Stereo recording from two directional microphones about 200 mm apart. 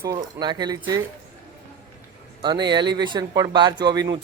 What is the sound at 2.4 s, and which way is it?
Speech, 20° right (ahead or behind).